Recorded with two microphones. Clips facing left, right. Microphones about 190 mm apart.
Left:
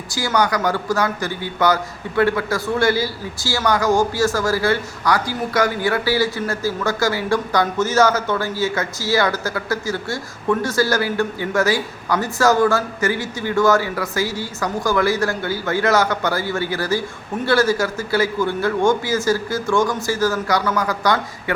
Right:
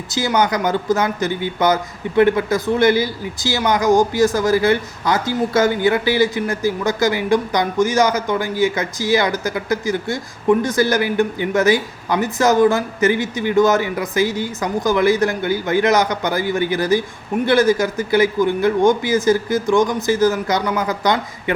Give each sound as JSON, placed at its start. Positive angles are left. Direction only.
{"t": 0.1, "sound": "speech", "side_deg": -20}